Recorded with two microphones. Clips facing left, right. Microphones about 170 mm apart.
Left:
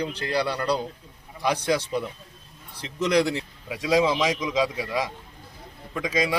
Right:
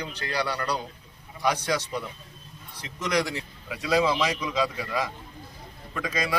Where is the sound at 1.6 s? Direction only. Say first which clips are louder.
Left 4 dB; 25° left (ahead or behind).